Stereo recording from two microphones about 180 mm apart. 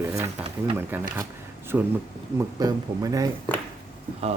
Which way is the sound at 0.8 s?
10° right (ahead or behind).